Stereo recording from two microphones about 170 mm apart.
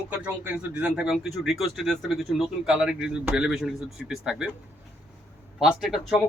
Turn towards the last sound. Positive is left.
turn(degrees=0)  # may be behind; listen again after turning